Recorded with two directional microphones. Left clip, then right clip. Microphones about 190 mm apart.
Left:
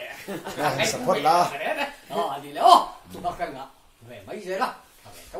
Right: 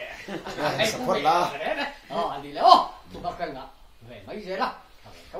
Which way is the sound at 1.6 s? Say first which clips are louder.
Left 1 dB; 5° left (ahead or behind).